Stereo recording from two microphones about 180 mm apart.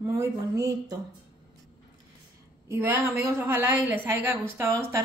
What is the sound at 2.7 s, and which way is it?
A woman's voice, 15° right (ahead or behind).